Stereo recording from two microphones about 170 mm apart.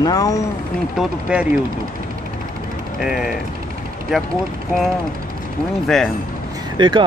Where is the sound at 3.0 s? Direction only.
5° right (ahead or behind).